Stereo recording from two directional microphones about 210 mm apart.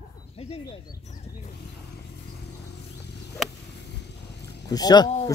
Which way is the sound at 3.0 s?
55° left (ahead or behind).